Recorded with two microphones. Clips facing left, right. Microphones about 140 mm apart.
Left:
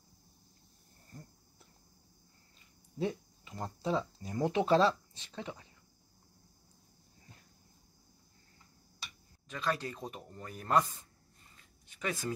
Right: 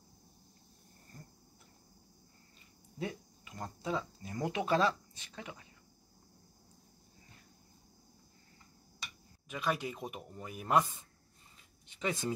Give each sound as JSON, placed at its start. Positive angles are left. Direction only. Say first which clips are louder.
{"t": 3.0, "sound": "speech", "louder": "left 5 dB", "side_deg": 25}
{"t": 9.5, "sound": "speech", "louder": "even", "side_deg": -15}